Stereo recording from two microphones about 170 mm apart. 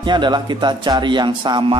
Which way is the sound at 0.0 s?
25° right (ahead or behind).